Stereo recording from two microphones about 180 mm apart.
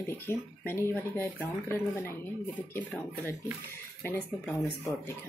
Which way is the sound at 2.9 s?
10° left (ahead or behind).